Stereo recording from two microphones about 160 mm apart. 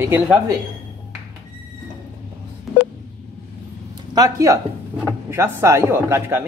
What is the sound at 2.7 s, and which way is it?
Telephone dialing, centre (ahead or behind).